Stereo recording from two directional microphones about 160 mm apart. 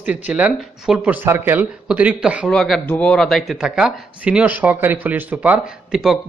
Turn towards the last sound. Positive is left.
turn(degrees=-5)  # may be behind; listen again after turning